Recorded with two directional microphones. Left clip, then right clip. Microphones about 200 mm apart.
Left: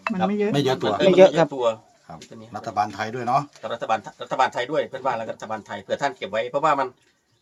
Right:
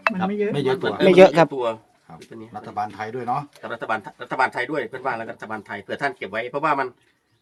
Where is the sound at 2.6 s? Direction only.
65° left (ahead or behind).